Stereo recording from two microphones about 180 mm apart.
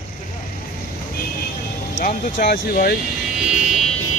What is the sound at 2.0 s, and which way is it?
Speech, 50° left (ahead or behind).